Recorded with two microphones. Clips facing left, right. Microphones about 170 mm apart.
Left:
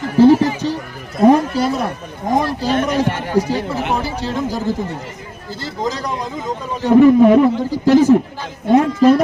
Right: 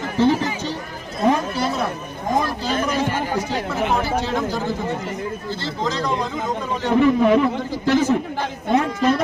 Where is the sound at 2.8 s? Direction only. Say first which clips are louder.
Left 2 dB; 70° left (ahead or behind).